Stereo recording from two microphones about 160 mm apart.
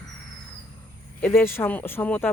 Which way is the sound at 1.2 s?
15° left (ahead or behind).